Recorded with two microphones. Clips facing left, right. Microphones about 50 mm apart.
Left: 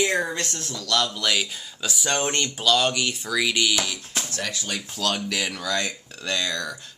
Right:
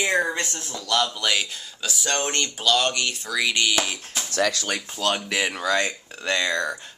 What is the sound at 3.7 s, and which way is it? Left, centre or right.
Speech, right.